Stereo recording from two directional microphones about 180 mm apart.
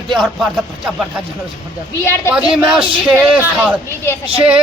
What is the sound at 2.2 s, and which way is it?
Speech, 5° right (ahead or behind).